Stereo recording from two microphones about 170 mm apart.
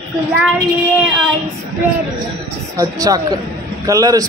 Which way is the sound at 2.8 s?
20° right (ahead or behind).